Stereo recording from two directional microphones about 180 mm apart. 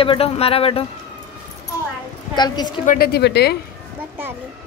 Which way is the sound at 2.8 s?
60° left (ahead or behind).